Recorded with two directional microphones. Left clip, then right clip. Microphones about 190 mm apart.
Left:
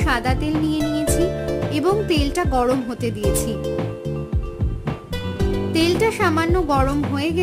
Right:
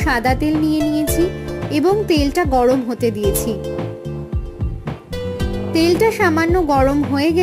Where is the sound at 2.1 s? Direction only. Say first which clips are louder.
Right 5 dB; 20° right (ahead or behind).